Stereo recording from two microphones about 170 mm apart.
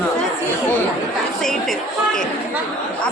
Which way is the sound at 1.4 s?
5° left (ahead or behind).